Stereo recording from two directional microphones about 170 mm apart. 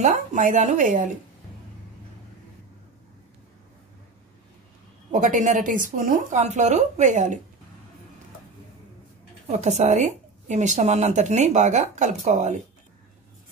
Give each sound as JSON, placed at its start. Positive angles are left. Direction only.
{"t": 0.0, "sound": "a woman's voice", "side_deg": -50}
{"t": 5.1, "sound": "a woman's voice", "side_deg": -45}
{"t": 9.5, "sound": "a woman's voice", "side_deg": -45}